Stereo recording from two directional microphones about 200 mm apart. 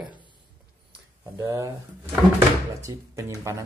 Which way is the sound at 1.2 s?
15° right (ahead or behind).